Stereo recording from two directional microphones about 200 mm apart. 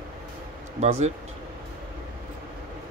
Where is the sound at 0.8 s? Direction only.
35° right (ahead or behind).